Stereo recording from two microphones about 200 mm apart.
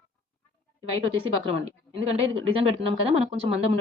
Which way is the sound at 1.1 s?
25° right (ahead or behind).